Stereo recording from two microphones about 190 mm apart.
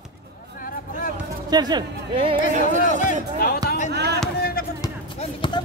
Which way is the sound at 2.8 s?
45° left (ahead or behind).